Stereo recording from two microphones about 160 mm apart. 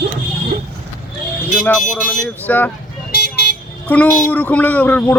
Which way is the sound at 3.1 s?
75° left (ahead or behind).